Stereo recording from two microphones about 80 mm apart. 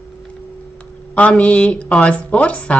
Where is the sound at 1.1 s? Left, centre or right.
Centre.